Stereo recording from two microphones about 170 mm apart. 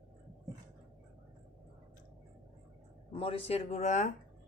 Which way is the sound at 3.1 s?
35° left (ahead or behind).